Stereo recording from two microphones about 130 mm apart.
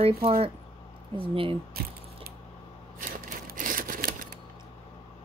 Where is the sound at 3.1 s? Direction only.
90° right.